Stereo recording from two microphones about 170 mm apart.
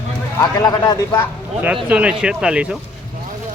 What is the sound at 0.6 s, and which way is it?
Speech, 25° left (ahead or behind).